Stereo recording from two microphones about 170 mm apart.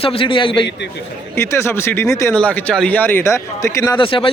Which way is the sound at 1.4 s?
15° left (ahead or behind).